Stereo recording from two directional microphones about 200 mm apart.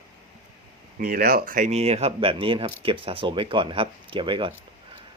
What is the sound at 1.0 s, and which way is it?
Speech, 45° right (ahead or behind).